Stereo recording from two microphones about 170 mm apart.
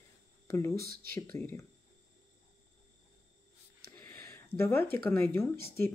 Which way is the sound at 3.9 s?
10° left (ahead or behind).